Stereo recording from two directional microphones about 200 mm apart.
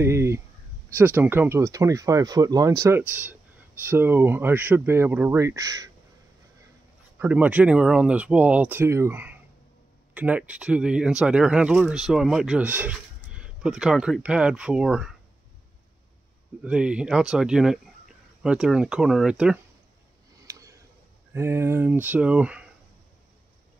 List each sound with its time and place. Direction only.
0.0 s a sound: 15° right (ahead or behind)
0.9 s speech: 10° right (ahead or behind)
7.2 s speech: 10° right (ahead or behind)
16.6 s speech: 5° right (ahead or behind)
20.4 s a sound: 15° right (ahead or behind)
21.3 s speech: 10° right (ahead or behind)